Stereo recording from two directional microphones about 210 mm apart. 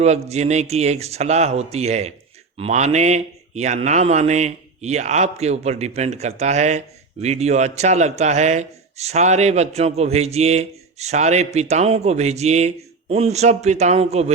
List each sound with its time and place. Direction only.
0.0 s a man's voice: 30° right (ahead or behind)